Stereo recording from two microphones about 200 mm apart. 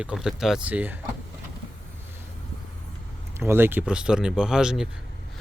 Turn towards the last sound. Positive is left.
turn(degrees=-5)  # may be behind; listen again after turning